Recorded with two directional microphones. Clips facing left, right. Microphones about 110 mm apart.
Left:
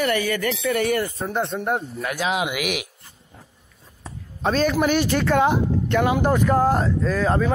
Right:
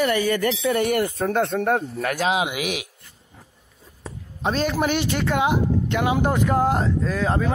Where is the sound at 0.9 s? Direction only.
55° right (ahead or behind); by 2.1 s 75° right (ahead or behind).